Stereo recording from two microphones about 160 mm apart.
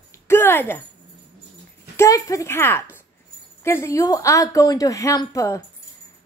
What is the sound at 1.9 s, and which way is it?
A woman's voice, 20° left (ahead or behind).